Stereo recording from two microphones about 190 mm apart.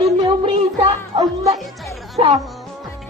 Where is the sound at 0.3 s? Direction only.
30° right (ahead or behind).